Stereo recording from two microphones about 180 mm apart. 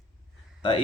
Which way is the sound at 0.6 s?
30° left (ahead or behind).